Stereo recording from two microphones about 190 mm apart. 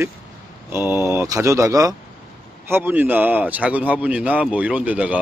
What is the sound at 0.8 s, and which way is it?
A man's voice, 15° right (ahead or behind).